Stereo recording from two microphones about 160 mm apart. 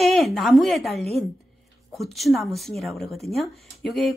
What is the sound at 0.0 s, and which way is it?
Speech, centre (ahead or behind).